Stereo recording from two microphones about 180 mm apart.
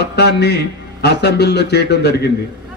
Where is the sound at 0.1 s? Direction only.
65° left (ahead or behind).